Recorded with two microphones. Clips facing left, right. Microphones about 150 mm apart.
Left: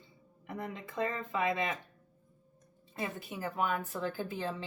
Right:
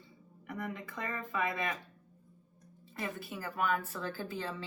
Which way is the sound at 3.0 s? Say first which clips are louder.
Left 2 dB; 20° left (ahead or behind).